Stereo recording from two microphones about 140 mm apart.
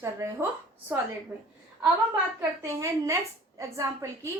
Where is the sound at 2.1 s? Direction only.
15° right (ahead or behind).